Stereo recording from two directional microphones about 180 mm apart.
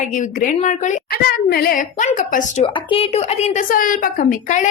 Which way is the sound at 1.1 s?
60° left (ahead or behind).